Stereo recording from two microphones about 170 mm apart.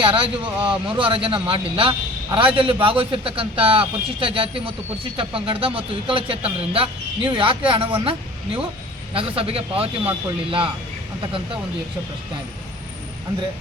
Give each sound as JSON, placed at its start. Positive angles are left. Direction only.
{"t": 0.0, "sound": "a man's voice", "side_deg": -30}
{"t": 9.1, "sound": "a man's voice", "side_deg": -35}